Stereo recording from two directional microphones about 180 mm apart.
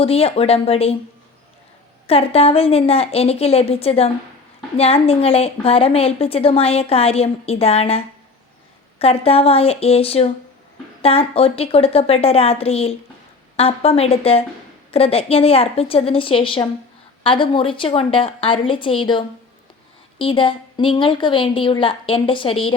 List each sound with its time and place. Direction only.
0.0 s a woman's voice: 35° left (ahead or behind)
2.0 s a woman's voice: 35° left (ahead or behind)